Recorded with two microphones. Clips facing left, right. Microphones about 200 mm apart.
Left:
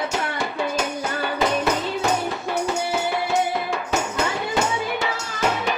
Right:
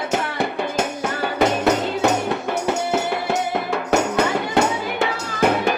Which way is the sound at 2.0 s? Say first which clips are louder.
Right 4 dB; 65° right (ahead or behind).